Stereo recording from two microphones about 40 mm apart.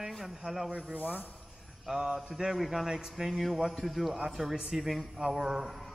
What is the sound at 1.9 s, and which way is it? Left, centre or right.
A man's voice, centre.